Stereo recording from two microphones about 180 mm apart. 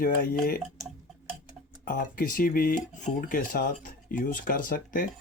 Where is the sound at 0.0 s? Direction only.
50° left (ahead or behind).